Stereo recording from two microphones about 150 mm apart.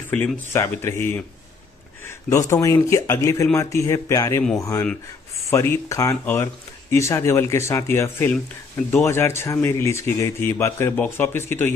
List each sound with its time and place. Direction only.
0.5 s speech: 15° left (ahead or behind)